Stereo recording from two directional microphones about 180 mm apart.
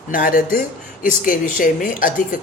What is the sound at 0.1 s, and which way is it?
A woman's voice, 50° left (ahead or behind).